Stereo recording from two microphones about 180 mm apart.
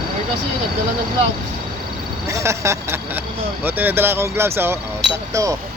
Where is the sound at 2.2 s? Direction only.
15° right (ahead or behind).